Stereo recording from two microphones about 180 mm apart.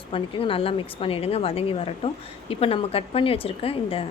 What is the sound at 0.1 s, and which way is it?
A woman's voice, 30° left (ahead or behind).